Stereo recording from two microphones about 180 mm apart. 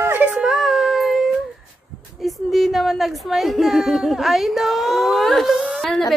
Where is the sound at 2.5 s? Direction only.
Centre (ahead or behind).